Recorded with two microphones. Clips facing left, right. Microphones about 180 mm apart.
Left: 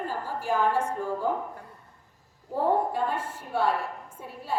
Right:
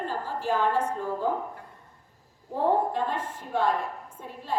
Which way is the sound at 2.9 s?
10° left (ahead or behind).